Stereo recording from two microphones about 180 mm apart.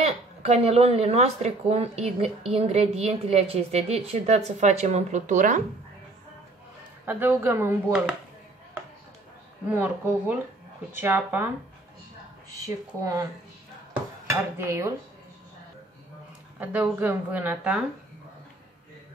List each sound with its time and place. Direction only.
0.0 s speech: 35° right (ahead or behind)
7.1 s a woman's voice: 10° right (ahead or behind)
9.7 s a woman's voice: 10° right (ahead or behind)
12.6 s speech: 20° right (ahead or behind)
14.6 s a woman's voice: 15° right (ahead or behind)
16.5 s a woman's voice: 10° right (ahead or behind)